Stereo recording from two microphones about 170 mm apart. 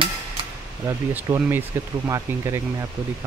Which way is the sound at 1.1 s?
10° right (ahead or behind).